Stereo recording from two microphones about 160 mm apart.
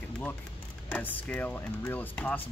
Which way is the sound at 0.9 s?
10° left (ahead or behind).